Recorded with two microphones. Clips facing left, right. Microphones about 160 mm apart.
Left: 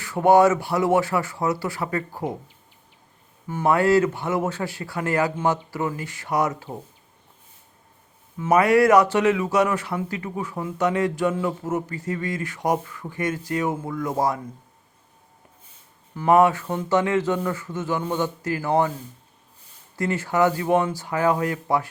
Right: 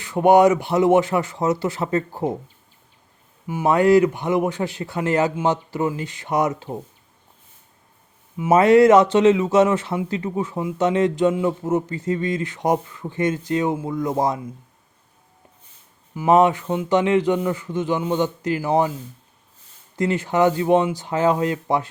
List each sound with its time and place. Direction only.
0.0 s speech: 20° right (ahead or behind)
3.4 s speech: 10° right (ahead or behind)
8.4 s speech: 25° right (ahead or behind)
16.1 s speech: 20° right (ahead or behind)
20.0 s speech: 20° right (ahead or behind)